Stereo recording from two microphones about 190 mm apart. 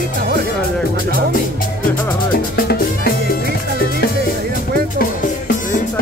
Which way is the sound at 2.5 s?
55° left (ahead or behind).